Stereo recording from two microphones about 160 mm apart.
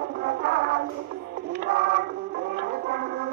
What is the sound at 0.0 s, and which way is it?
Music, 70° right (ahead or behind).